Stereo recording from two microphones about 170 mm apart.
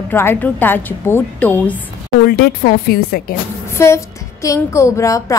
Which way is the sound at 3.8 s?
15° left (ahead or behind).